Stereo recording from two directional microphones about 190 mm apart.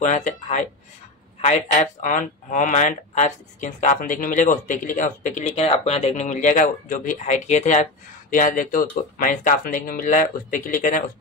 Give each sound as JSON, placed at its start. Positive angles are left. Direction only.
{"t": 0.0, "sound": "speech", "side_deg": 40}